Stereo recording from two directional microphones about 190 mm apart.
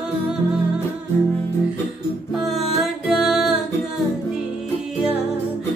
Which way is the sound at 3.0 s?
Centre (ahead or behind).